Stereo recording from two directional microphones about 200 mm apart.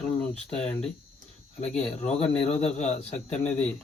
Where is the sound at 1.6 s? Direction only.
35° left (ahead or behind).